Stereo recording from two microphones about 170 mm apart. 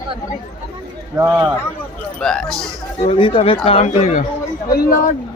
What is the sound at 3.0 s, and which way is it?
Speech, 30° left (ahead or behind).